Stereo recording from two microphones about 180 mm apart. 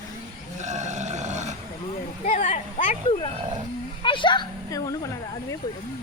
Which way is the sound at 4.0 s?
25° left (ahead or behind).